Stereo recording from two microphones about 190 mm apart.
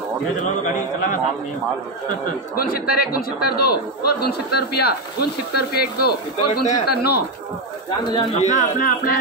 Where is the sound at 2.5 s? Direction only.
50° left (ahead or behind).